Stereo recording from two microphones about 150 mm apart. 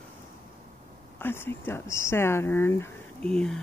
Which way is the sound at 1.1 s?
15° left (ahead or behind).